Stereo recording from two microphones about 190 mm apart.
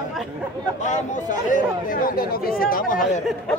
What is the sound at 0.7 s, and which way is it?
Speech, 40° left (ahead or behind).